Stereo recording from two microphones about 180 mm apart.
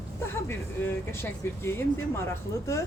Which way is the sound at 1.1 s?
15° left (ahead or behind).